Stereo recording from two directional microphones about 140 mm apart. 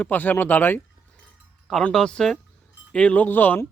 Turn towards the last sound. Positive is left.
turn(degrees=15)  # may be behind; listen again after turning